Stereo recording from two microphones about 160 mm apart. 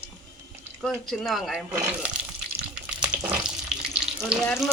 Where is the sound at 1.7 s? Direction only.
10° right (ahead or behind).